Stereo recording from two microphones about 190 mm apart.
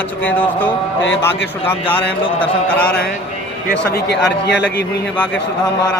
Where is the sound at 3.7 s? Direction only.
60° left (ahead or behind).